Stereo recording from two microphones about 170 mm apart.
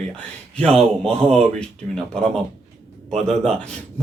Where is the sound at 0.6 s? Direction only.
5° left (ahead or behind).